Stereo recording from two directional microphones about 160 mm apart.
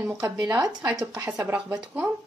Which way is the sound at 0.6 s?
25° right (ahead or behind).